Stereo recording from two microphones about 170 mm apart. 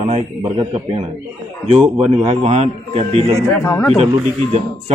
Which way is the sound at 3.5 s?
15° left (ahead or behind).